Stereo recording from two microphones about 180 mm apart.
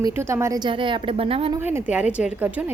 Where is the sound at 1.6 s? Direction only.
10° right (ahead or behind).